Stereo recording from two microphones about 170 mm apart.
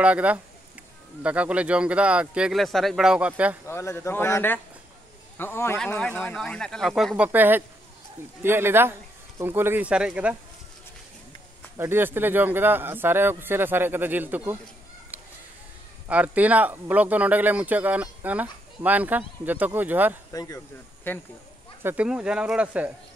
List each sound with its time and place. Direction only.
0.0 s speech: 10° right (ahead or behind)
3.6 s a man's voice: 15° left (ahead or behind); by 10.3 s 5° right (ahead or behind)
11.7 s speech: 15° right (ahead or behind)
15.1 s a sound: 10° right (ahead or behind)
16.1 s speech: 10° right (ahead or behind)
20.3 s speech: 20° left (ahead or behind)
21.8 s speech: 5° right (ahead or behind)